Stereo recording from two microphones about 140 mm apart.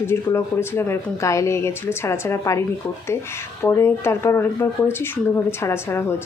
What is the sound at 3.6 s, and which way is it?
Speech, 15° left (ahead or behind).